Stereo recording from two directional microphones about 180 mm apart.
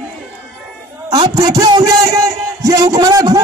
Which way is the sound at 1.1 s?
20° right (ahead or behind).